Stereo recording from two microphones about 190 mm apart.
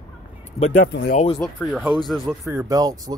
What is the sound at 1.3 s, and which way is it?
Speech, centre (ahead or behind).